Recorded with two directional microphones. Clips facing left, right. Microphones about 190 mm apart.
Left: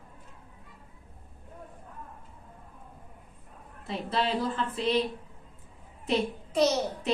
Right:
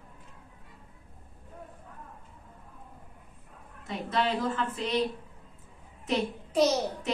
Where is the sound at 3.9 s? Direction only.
30° left (ahead or behind).